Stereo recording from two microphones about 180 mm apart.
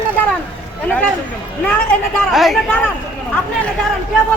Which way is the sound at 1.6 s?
5° left (ahead or behind).